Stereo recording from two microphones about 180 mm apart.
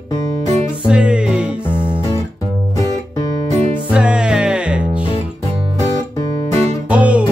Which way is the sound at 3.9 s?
5° right (ahead or behind).